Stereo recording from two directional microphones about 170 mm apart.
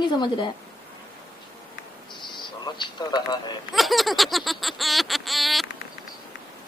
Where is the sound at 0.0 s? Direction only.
25° left (ahead or behind).